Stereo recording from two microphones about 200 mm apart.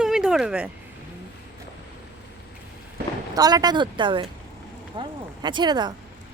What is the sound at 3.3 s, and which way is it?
Speech, 20° right (ahead or behind).